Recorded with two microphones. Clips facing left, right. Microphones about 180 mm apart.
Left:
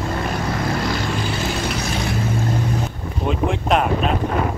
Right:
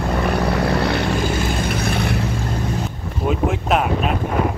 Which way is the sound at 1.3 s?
55° right (ahead or behind).